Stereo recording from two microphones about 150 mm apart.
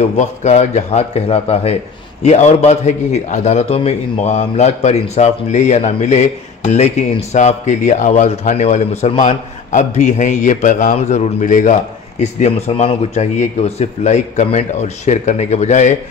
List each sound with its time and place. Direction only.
0.2 s a man's voice: 50° left (ahead or behind)
12.2 s a man's voice: 45° left (ahead or behind)